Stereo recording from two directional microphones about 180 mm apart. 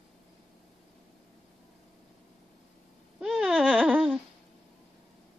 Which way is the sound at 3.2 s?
Centre (ahead or behind).